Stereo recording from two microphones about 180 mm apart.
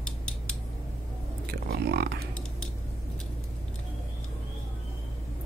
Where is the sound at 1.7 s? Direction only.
65° right (ahead or behind).